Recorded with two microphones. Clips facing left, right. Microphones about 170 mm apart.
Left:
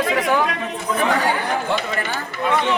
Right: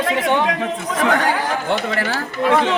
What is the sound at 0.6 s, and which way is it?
Speech, 90° right.